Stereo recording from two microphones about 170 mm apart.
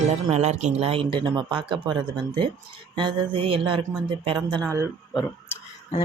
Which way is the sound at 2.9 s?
30° right (ahead or behind).